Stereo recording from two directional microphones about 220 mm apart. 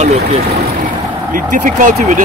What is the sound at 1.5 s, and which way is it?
Speech, 35° right (ahead or behind).